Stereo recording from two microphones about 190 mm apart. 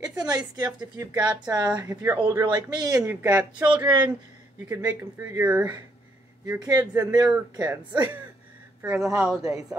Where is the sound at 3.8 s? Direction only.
20° right (ahead or behind); by 9.4 s 5° right (ahead or behind).